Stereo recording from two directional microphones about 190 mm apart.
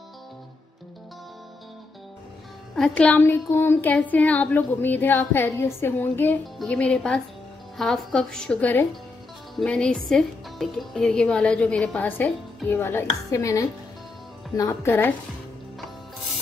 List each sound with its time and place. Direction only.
2.7 s speech: 5° left (ahead or behind)